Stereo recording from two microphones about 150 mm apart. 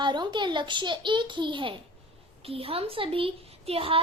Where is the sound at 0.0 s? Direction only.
30° right (ahead or behind).